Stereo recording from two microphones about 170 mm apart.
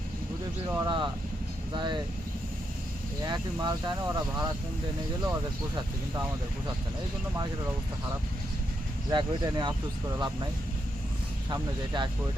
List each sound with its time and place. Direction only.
0.7 s speech: 25° right (ahead or behind)
3.2 s speech: 25° right (ahead or behind)
9.0 s speech: 25° right (ahead or behind)